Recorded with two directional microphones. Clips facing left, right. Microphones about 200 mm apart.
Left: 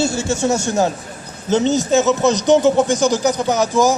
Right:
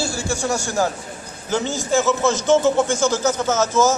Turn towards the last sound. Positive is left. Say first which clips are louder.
# left 2 dB
turn(degrees=15)  # may be behind; listen again after turning